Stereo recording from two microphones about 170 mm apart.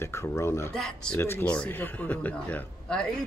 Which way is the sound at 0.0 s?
15° left (ahead or behind).